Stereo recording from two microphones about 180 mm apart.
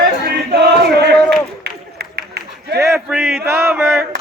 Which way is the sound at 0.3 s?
65° right (ahead or behind).